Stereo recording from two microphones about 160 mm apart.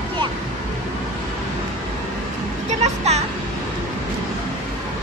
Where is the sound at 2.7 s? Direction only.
40° right (ahead or behind).